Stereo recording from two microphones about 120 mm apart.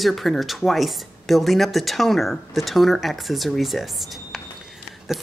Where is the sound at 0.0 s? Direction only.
Centre (ahead or behind).